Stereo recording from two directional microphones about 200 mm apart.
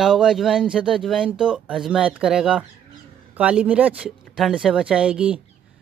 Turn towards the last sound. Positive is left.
turn(degrees=-5)  # may be behind; listen again after turning